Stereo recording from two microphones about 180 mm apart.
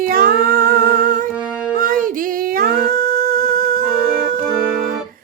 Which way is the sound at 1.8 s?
50° right (ahead or behind).